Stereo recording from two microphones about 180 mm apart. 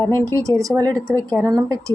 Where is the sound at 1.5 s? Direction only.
20° right (ahead or behind).